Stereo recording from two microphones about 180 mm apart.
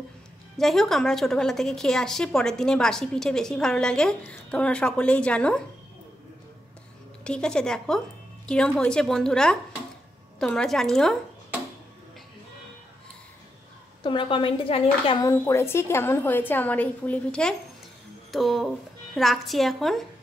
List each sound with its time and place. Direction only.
0.6 s a woman's voice: centre (ahead or behind)
7.2 s a woman's voice: 5° left (ahead or behind)
14.0 s speech: 30° left (ahead or behind)
15.2 s a woman's voice: 15° left (ahead or behind)